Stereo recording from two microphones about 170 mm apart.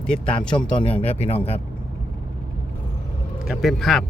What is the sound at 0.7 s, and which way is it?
Speech, 30° left (ahead or behind).